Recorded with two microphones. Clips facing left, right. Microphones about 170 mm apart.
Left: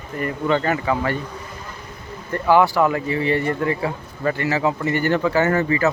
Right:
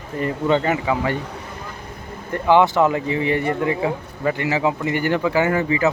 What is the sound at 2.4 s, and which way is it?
Speech, 20° right (ahead or behind).